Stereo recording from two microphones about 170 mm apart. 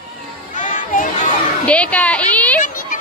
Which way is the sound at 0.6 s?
50° left (ahead or behind).